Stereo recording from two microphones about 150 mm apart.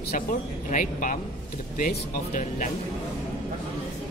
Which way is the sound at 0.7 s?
60° left (ahead or behind).